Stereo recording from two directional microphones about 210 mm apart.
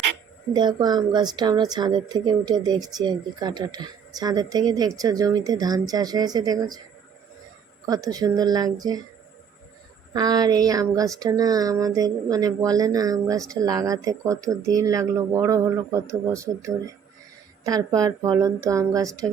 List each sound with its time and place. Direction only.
0.5 s speech: 20° right (ahead or behind)
7.9 s speech: 20° right (ahead or behind)
10.1 s speech: 20° right (ahead or behind)